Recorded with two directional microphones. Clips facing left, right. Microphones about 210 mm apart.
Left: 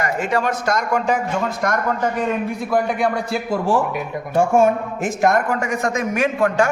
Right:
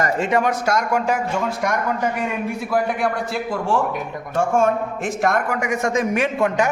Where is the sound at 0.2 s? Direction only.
20° right (ahead or behind).